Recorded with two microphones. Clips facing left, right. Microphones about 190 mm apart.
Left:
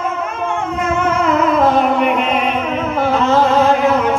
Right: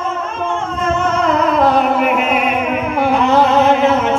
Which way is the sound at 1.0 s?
10° left (ahead or behind).